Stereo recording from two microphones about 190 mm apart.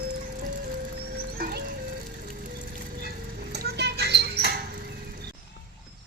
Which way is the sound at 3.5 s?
60° right (ahead or behind).